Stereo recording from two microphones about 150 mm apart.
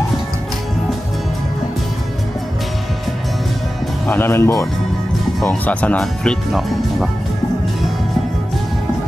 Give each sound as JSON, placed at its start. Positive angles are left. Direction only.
{"t": 4.1, "sound": "speech", "side_deg": 15}